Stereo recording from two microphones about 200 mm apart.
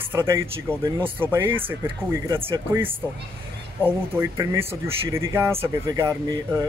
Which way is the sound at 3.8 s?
10° right (ahead or behind).